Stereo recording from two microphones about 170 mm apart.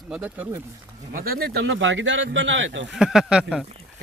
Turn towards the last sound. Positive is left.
turn(degrees=-5)  # may be behind; listen again after turning